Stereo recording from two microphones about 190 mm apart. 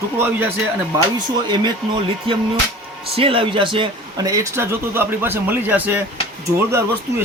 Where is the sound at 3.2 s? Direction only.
30° right (ahead or behind).